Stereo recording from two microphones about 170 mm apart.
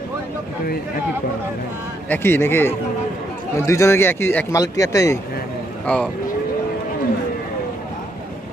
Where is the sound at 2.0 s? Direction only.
15° left (ahead or behind).